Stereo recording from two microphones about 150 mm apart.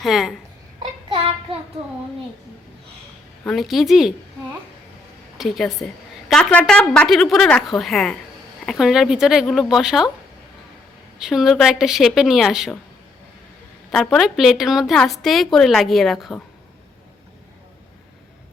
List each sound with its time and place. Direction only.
0.0 s a woman's voice: centre (ahead or behind)
1.1 s child singing: 40° right (ahead or behind)
3.4 s a woman's voice: centre (ahead or behind)
5.4 s a woman's voice: centre (ahead or behind)
11.2 s a woman's voice: centre (ahead or behind)
13.9 s a woman's voice: centre (ahead or behind)